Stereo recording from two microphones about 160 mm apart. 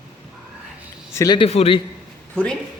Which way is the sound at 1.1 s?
20° left (ahead or behind).